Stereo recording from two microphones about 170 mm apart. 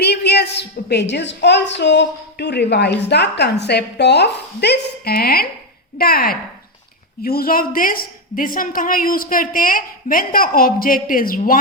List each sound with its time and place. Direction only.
0.0 s a woman's voice: 75° left (ahead or behind); by 11.5 s 55° left (ahead or behind)